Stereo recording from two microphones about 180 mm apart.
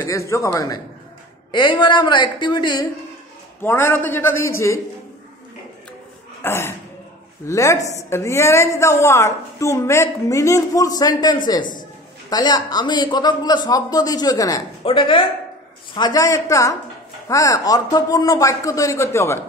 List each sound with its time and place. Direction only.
0.0 s a woman's voice: 15° left (ahead or behind)
3.6 s a woman's voice: 10° left (ahead or behind)
6.4 s a woman's voice: 15° left (ahead or behind)